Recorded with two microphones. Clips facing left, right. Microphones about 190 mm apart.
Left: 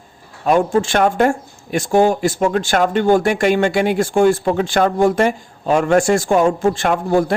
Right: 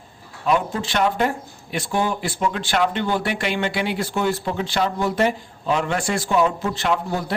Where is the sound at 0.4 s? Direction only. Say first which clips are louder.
Left 7 dB; 45° left (ahead or behind).